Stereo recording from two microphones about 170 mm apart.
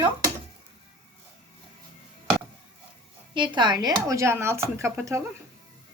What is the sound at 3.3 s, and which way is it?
Speech, 25° right (ahead or behind).